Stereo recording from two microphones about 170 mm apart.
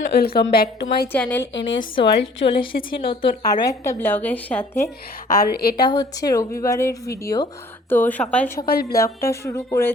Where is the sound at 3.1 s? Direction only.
25° left (ahead or behind).